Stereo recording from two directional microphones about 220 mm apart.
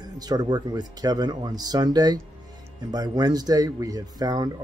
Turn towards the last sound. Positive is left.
turn(degrees=-15)  # may be behind; listen again after turning